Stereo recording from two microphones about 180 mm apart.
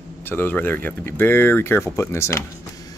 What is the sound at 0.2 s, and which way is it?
Speech, 10° left (ahead or behind).